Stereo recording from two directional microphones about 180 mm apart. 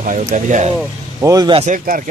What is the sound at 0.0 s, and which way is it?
Speech, 45° right (ahead or behind).